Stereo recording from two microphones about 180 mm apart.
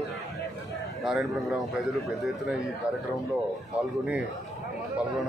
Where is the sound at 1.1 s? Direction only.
Centre (ahead or behind).